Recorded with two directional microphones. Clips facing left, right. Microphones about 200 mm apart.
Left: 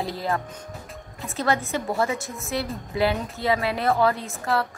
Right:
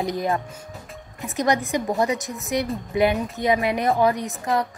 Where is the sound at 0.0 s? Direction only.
20° right (ahead or behind).